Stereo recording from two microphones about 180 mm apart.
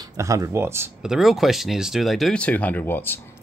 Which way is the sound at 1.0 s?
Centre (ahead or behind).